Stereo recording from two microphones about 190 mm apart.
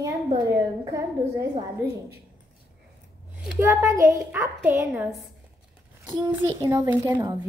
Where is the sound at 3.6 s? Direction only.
15° right (ahead or behind).